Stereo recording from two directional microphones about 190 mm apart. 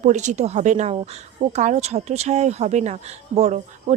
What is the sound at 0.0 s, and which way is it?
Speech, 40° right (ahead or behind).